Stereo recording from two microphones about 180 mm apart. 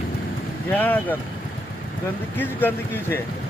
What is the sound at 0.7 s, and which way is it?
Vehicle, 10° left (ahead or behind).